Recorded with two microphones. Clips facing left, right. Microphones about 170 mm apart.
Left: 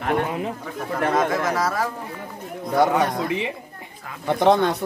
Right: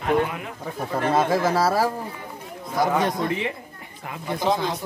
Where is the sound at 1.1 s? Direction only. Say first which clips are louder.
Right 3 dB; 30° right (ahead or behind).